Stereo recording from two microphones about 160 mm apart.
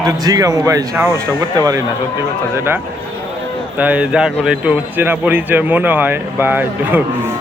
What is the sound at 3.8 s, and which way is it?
Speech, 10° right (ahead or behind).